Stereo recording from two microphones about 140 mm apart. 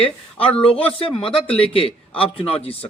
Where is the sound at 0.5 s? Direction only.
40° left (ahead or behind).